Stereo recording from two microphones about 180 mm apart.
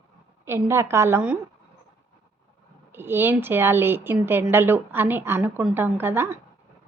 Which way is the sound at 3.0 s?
10° right (ahead or behind).